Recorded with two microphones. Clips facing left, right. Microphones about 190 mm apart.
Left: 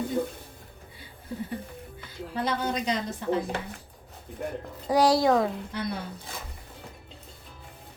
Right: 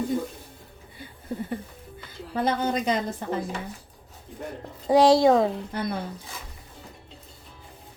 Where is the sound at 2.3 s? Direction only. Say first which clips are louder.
Right 4 dB; 50° right (ahead or behind).